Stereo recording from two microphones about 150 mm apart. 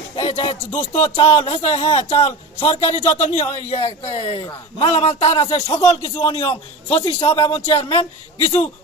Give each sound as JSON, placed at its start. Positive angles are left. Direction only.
{"t": 0.1, "sound": "music", "side_deg": 40}
{"t": 0.9, "sound": "a man's voice", "side_deg": 45}